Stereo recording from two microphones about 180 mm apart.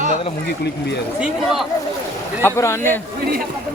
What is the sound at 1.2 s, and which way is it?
Speech, centre (ahead or behind).